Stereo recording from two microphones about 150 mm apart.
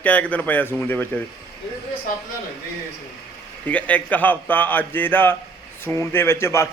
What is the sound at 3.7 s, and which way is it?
A man's voice, 10° left (ahead or behind).